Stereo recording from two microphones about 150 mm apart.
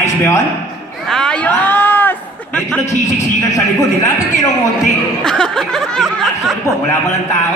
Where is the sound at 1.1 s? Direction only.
5° left (ahead or behind).